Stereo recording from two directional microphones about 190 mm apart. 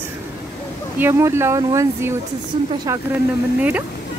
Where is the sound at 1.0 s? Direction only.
15° right (ahead or behind).